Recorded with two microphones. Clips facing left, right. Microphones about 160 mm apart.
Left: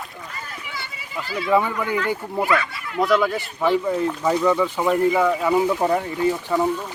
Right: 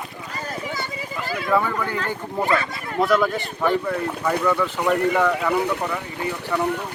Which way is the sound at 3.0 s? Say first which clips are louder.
Even; centre (ahead or behind).